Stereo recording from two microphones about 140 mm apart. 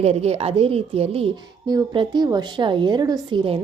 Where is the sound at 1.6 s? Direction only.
30° right (ahead or behind).